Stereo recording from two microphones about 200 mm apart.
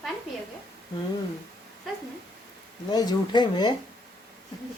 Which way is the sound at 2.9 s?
20° left (ahead or behind).